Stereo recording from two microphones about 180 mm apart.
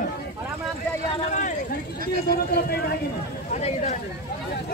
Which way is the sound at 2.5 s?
60° left (ahead or behind).